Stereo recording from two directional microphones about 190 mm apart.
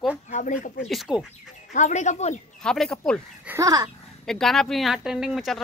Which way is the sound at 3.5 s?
15° right (ahead or behind).